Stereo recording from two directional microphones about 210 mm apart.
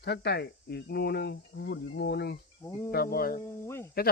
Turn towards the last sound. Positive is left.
turn(degrees=10)  # may be behind; listen again after turning